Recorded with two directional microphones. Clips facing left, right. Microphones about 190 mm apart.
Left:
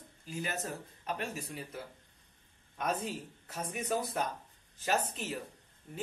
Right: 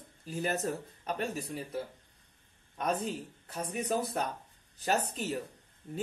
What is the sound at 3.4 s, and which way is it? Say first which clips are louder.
A man's voice: right 3 dB; 35° right (ahead or behind).